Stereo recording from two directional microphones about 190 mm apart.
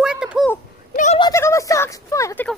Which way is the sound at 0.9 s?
35° left (ahead or behind).